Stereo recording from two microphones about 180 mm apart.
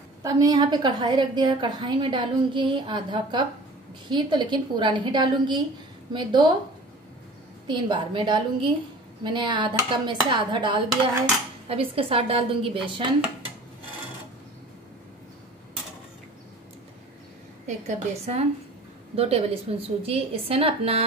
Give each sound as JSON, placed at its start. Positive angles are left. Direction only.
{"t": 0.2, "sound": "a woman's voice", "side_deg": -20}
{"t": 7.6, "sound": "a woman's voice", "side_deg": -25}
{"t": 17.6, "sound": "a woman's voice", "side_deg": -40}